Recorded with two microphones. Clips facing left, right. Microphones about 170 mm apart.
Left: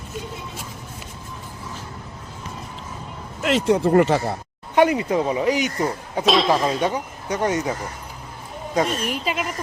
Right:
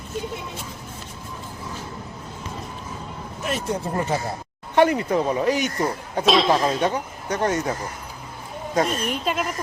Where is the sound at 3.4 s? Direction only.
90° left.